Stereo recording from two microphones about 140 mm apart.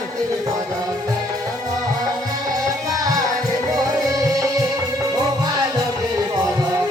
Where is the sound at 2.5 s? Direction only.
25° right (ahead or behind).